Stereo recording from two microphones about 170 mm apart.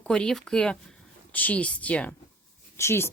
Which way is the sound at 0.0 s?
5° left (ahead or behind).